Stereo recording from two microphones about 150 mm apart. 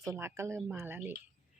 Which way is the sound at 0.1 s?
15° right (ahead or behind).